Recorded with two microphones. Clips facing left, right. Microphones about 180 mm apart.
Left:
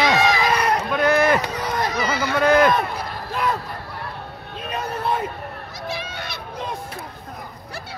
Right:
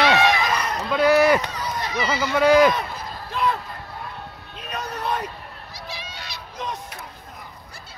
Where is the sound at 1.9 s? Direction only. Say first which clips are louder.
Left 1 dB; 50° left (ahead or behind).